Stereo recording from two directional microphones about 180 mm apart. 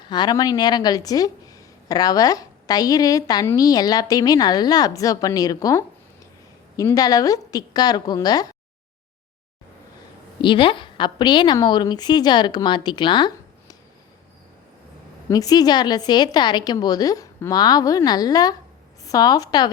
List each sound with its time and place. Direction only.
0.0 s speech: 25° left (ahead or behind)
10.4 s speech: 25° left (ahead or behind)
15.3 s speech: 20° left (ahead or behind)